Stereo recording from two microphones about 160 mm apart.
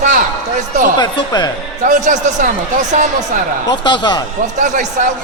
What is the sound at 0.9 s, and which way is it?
Speech, 25° left (ahead or behind).